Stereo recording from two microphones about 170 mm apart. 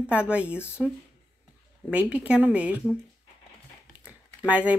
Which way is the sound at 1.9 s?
5° right (ahead or behind).